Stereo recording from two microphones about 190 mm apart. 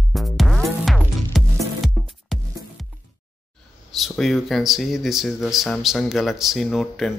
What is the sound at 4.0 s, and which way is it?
Speech, centre (ahead or behind).